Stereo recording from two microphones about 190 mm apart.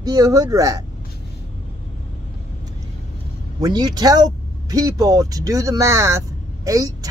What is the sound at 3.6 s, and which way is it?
Speech, 20° right (ahead or behind).